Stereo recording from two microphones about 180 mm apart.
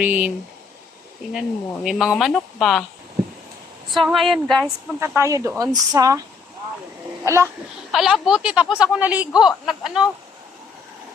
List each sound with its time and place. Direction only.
0.0 s speech: 10° right (ahead or behind)
1.3 s speech: 5° right (ahead or behind)
3.9 s speech: centre (ahead or behind)
4.9 s speech: 15° right (ahead or behind)
7.3 s speech: 15° right (ahead or behind)
7.9 s speech: centre (ahead or behind)